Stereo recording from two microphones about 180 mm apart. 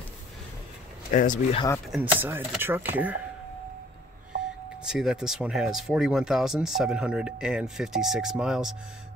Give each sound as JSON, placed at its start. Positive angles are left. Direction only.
{"t": 1.1, "sound": "speech", "side_deg": 45}
{"t": 1.9, "sound": "speech", "side_deg": 0}
{"t": 2.2, "sound": "speech", "side_deg": -10}
{"t": 4.8, "sound": "speech", "side_deg": -5}